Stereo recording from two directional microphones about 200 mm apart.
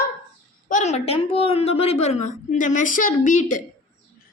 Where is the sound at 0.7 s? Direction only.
35° left (ahead or behind).